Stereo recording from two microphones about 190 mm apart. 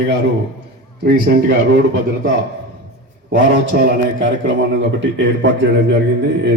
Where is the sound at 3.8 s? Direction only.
60° right (ahead or behind).